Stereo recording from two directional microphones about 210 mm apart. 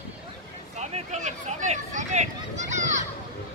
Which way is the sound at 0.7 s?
35° right (ahead or behind).